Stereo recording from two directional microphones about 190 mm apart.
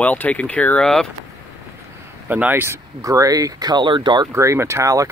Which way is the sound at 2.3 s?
10° right (ahead or behind).